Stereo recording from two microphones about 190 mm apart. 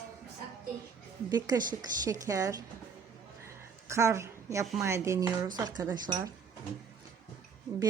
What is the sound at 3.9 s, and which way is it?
A woman's voice, 15° right (ahead or behind).